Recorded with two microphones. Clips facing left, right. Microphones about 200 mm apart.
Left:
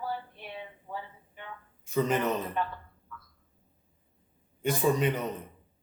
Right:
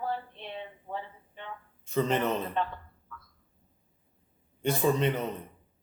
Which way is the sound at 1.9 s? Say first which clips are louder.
Even; 10° left (ahead or behind).